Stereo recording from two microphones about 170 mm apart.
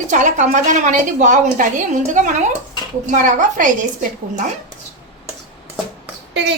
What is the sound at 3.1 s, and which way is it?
Speech, 50° right (ahead or behind).